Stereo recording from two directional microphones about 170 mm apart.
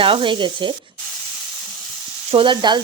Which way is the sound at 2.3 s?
30° right (ahead or behind).